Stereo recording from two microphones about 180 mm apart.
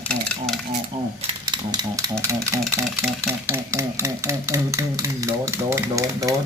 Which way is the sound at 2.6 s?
Centre (ahead or behind).